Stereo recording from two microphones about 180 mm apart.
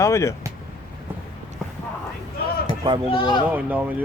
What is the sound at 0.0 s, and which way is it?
Speech, 15° left (ahead or behind).